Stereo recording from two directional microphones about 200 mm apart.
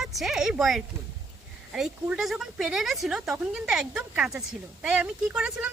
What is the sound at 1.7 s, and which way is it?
Speech, 5° right (ahead or behind).